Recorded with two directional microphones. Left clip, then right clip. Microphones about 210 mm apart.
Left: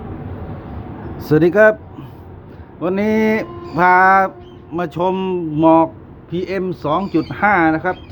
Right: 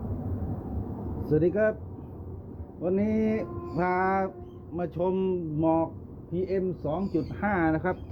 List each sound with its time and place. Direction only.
1.3 s speech: 40° left (ahead or behind)
2.8 s speech: 35° left (ahead or behind); by 7.9 s 10° left (ahead or behind)